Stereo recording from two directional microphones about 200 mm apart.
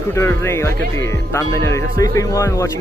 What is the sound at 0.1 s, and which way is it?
Speech, 10° left (ahead or behind).